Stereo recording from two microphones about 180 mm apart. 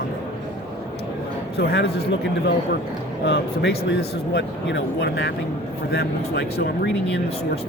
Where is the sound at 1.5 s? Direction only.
65° left (ahead or behind).